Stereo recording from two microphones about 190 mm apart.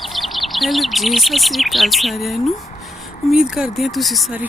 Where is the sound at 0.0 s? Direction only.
Centre (ahead or behind).